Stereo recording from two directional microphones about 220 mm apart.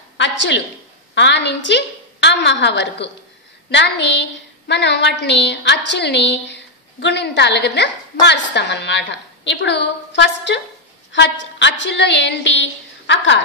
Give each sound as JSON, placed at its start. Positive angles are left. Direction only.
{"t": 1.1, "sound": "a woman's voice", "side_deg": 50}
{"t": 11.1, "sound": "a sound", "side_deg": 55}
{"t": 11.8, "sound": "a woman's voice", "side_deg": 50}